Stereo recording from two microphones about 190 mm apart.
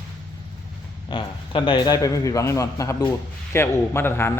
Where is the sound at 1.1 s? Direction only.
25° left (ahead or behind).